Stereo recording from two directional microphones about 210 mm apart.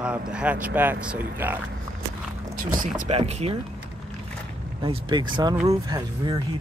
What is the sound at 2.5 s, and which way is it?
Speech, 40° right (ahead or behind).